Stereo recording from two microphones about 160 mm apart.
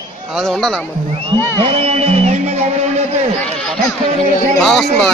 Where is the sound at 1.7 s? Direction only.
40° right (ahead or behind).